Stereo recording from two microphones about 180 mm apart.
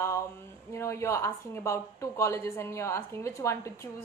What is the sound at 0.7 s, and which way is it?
A woman's voice, 15° left (ahead or behind).